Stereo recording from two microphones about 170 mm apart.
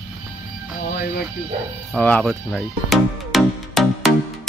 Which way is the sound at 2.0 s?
5° left (ahead or behind).